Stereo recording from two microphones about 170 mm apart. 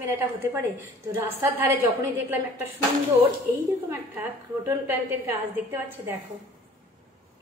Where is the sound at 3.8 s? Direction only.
15° right (ahead or behind).